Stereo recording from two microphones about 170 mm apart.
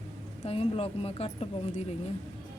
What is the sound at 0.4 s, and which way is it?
Speech, 35° left (ahead or behind).